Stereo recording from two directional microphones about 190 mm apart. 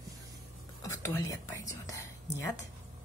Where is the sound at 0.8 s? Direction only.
15° left (ahead or behind).